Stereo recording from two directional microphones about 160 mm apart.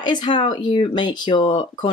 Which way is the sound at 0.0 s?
30° left (ahead or behind).